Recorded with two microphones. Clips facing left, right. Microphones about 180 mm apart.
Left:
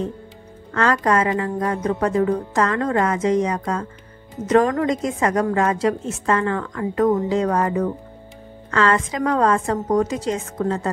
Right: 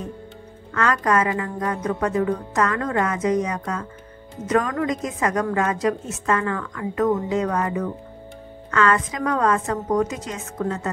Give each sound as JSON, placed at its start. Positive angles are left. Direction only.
{"t": 0.7, "sound": "a woman's voice", "side_deg": 30}